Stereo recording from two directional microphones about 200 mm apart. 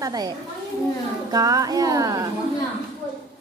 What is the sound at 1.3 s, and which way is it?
Speech, 15° right (ahead or behind).